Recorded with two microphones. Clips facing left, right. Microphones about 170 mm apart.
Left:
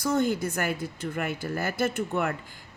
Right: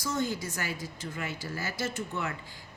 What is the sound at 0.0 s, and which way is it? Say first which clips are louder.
Speech: left 7 dB; 55° left (ahead or behind).